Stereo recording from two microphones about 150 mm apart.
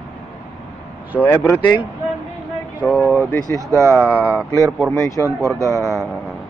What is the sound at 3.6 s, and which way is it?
Speech, 20° right (ahead or behind).